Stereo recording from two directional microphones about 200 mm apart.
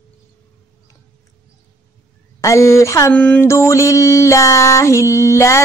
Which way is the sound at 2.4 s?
15° left (ahead or behind).